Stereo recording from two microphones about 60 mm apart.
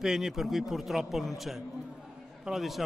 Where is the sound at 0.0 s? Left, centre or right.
Centre.